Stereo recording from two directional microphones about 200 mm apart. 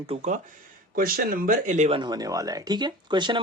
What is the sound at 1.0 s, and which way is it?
Speech, 45° right (ahead or behind).